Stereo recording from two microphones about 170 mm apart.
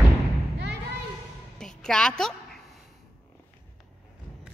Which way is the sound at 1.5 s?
5° left (ahead or behind).